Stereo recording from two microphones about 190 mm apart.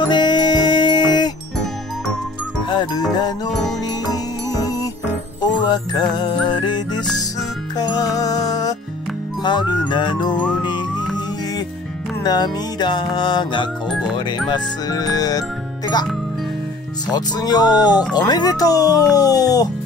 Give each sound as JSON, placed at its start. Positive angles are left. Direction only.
{"t": 0.0, "sound": "music", "side_deg": 25}
{"t": 2.7, "sound": "speech", "side_deg": 25}
{"t": 4.1, "sound": "music", "side_deg": 20}
{"t": 6.4, "sound": "speech", "side_deg": 25}
{"t": 10.3, "sound": "music", "side_deg": 5}
{"t": 12.2, "sound": "speech", "side_deg": 20}
{"t": 13.8, "sound": "speech", "side_deg": -5}
{"t": 14.5, "sound": "speech", "side_deg": 20}
{"t": 17.1, "sound": "speech", "side_deg": 20}